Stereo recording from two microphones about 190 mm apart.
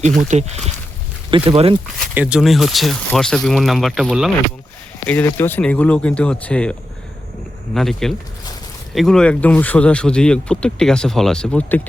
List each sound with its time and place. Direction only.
0.2 s speech: 35° right (ahead or behind)
2.1 s speech: 5° right (ahead or behind)
5.0 s speech: 10° left (ahead or behind)